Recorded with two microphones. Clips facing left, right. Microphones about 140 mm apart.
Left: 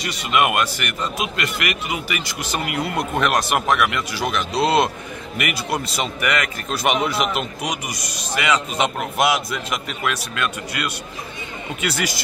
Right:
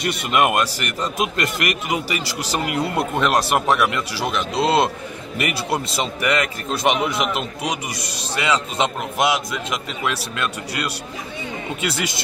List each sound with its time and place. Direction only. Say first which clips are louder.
0.0 s speech: right 5 dB; 55° right (ahead or behind)
0.3 s a man's voice: even; 35° right (ahead or behind)